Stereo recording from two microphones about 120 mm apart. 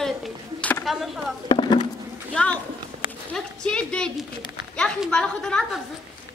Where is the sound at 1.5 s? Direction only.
40° left (ahead or behind).